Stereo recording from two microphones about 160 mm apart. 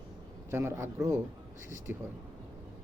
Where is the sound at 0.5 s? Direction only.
15° right (ahead or behind).